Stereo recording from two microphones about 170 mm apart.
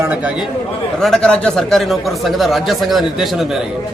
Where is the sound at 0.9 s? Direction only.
Centre (ahead or behind).